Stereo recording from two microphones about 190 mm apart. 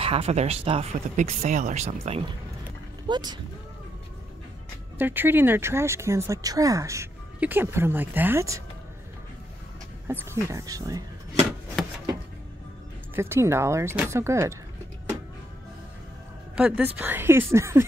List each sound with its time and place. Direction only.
0.0 s speech: 30° right (ahead or behind)
3.1 s speech: 20° right (ahead or behind)
4.9 s speech: 10° right (ahead or behind)
10.0 s speech: 15° right (ahead or behind)
11.8 s a sound: 5° left (ahead or behind)
13.1 s speech: 15° right (ahead or behind)
16.5 s speech: 5° right (ahead or behind)